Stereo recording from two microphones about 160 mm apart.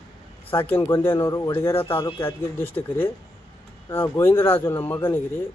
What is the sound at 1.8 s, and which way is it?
Speech, 30° left (ahead or behind).